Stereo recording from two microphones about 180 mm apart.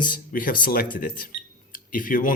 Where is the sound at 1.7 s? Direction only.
50° left (ahead or behind).